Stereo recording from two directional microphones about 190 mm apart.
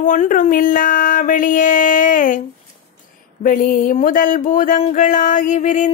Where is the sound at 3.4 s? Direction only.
45° left (ahead or behind).